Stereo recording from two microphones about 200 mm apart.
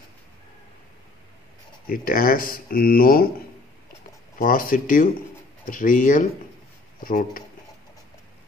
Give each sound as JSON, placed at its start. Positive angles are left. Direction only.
{"t": 1.9, "sound": "speech", "side_deg": 45}